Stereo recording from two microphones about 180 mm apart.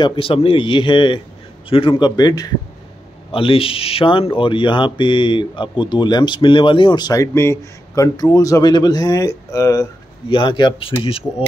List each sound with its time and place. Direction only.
0.0 s speech: 30° left (ahead or behind)